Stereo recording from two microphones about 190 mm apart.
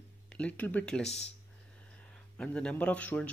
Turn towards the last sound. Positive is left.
turn(degrees=10)  # may be behind; listen again after turning